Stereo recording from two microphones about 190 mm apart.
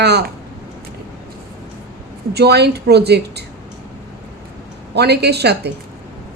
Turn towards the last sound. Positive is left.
turn(degrees=-60)  # may be behind; listen again after turning